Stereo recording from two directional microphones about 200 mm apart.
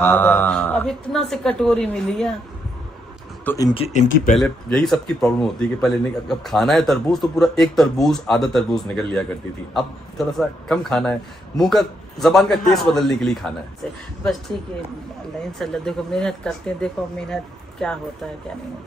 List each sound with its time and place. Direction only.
0.0 s speech: 10° left (ahead or behind)
3.4 s speech: 20° left (ahead or behind)
3.8 s speech: 35° left (ahead or behind)
4.4 s speech: centre (ahead or behind)
15.6 s speech: centre (ahead or behind)